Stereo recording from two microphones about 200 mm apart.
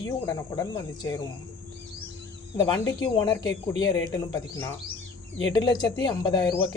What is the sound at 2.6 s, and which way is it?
Speech, 20° left (ahead or behind).